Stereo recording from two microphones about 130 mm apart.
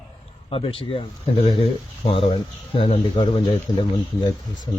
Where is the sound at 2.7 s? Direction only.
45° left (ahead or behind).